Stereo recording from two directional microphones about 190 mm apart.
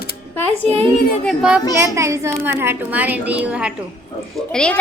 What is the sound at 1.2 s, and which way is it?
Speech, centre (ahead or behind).